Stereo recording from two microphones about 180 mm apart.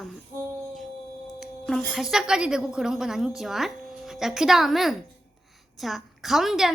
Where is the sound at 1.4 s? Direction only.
Centre (ahead or behind).